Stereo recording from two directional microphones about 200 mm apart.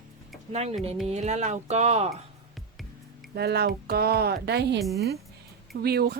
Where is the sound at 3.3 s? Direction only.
55° right (ahead or behind).